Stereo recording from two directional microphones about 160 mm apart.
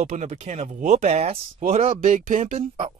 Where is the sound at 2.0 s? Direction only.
55° right (ahead or behind).